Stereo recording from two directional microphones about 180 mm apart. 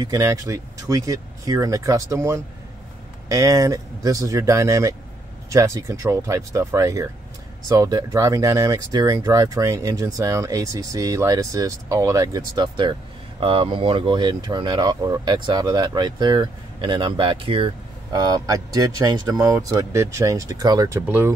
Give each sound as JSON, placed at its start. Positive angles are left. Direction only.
{"t": 0.0, "sound": "speech", "side_deg": -20}